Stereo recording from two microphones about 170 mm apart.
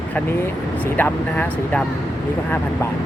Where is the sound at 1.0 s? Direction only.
10° left (ahead or behind).